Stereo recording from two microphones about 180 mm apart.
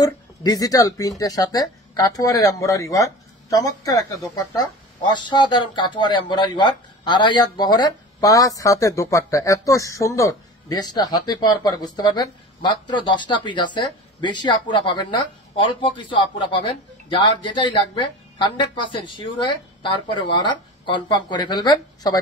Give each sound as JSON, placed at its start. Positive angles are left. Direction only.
{"t": 0.0, "sound": "speech", "side_deg": 20}